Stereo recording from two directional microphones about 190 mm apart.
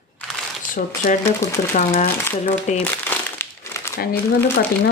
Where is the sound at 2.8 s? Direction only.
10° left (ahead or behind).